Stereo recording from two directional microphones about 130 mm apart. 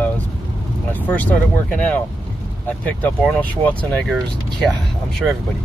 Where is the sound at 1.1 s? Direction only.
10° left (ahead or behind).